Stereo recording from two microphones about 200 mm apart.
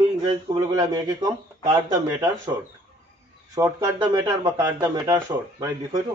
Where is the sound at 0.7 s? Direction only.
20° right (ahead or behind).